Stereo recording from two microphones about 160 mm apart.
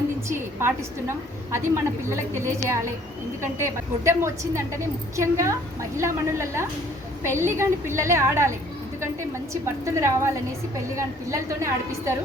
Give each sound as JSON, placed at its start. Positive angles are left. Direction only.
{"t": 0.3, "sound": "a woman's voice", "side_deg": -15}